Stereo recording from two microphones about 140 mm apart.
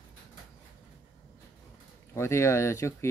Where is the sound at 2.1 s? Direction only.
20° left (ahead or behind).